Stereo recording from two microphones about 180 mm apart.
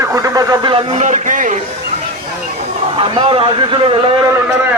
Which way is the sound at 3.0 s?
30° right (ahead or behind).